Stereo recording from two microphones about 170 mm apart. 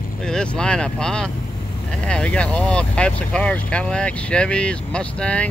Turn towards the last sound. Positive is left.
turn(degrees=5)  # may be behind; listen again after turning